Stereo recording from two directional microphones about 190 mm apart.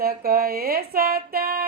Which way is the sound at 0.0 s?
50° right (ahead or behind).